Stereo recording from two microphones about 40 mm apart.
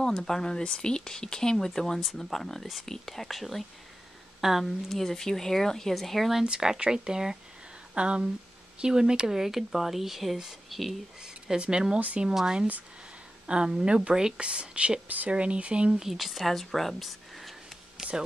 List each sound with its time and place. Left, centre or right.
0.0 s speech: centre
2.1 s speech: centre
4.8 s speech: centre
6.4 s speech: centre
7.9 s a woman's voice: right
9.3 s speech: centre
11.2 s a woman's voice: centre
14.4 s a woman's voice: right
15.0 s speech: right
15.3 s a woman's voice: right
15.9 s speech: centre
16.2 s a sound: centre